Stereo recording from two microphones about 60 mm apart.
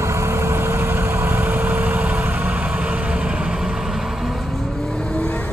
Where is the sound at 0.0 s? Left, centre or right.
Right.